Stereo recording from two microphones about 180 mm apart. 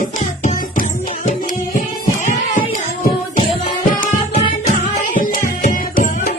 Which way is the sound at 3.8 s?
45° left (ahead or behind).